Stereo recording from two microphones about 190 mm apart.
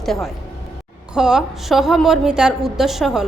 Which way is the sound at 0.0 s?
Centre (ahead or behind).